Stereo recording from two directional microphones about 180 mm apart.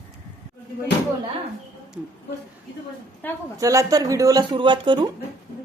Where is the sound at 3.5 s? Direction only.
20° right (ahead or behind).